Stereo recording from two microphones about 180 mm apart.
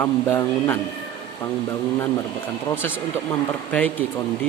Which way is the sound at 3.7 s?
5° left (ahead or behind).